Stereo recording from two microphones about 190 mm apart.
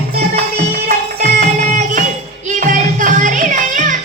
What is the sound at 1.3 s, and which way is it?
Music, 40° right (ahead or behind).